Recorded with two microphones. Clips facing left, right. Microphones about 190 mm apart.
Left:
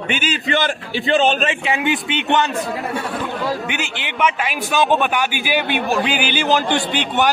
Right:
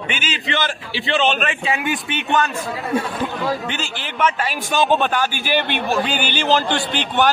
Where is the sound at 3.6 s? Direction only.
15° left (ahead or behind).